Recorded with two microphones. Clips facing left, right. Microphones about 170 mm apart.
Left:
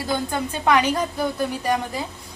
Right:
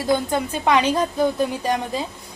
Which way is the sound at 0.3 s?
20° right (ahead or behind).